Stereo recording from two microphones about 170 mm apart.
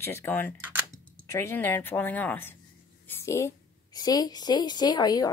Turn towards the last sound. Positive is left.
turn(degrees=25)  # may be behind; listen again after turning